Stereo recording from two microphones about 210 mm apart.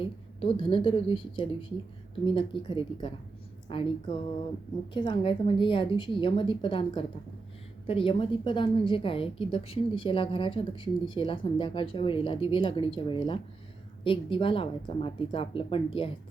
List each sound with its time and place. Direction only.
0.0 s a woman's voice: 25° left (ahead or behind)